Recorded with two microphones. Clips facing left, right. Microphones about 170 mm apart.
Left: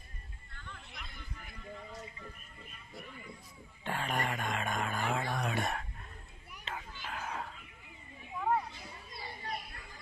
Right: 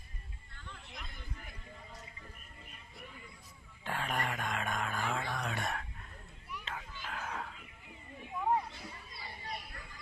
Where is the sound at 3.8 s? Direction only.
Centre (ahead or behind).